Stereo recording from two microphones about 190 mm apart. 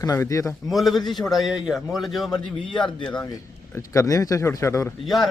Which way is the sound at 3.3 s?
15° left (ahead or behind).